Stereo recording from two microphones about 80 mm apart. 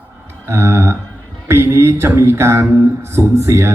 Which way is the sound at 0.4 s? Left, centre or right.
Right.